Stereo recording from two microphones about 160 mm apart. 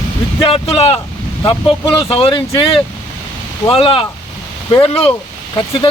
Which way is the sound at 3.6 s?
35° left (ahead or behind).